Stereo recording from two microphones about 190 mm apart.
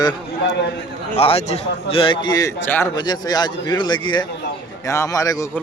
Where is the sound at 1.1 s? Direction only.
30° left (ahead or behind); by 2.9 s 10° left (ahead or behind).